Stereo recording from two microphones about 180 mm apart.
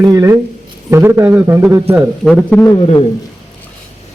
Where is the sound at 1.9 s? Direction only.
5° right (ahead or behind).